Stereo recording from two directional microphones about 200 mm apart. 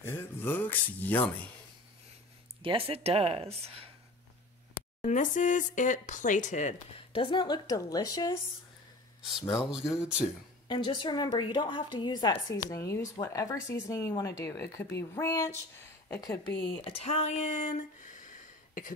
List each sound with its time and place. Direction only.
0.0 s speech: 10° left (ahead or behind)
2.6 s speech: 30° right (ahead or behind)
5.0 s speech: 40° left (ahead or behind); by 8.4 s 20° left (ahead or behind)
9.6 s speech: 5° right (ahead or behind)
10.7 s a woman's voice: 20° left (ahead or behind)
16.8 s speech: 35° left (ahead or behind)